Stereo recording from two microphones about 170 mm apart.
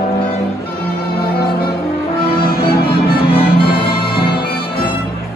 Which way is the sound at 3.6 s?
30° left (ahead or behind).